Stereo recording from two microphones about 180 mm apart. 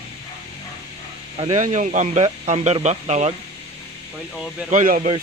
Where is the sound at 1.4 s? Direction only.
40° right (ahead or behind).